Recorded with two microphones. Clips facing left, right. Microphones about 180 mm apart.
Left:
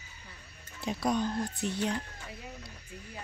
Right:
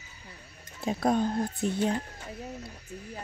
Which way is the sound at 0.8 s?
50° right (ahead or behind).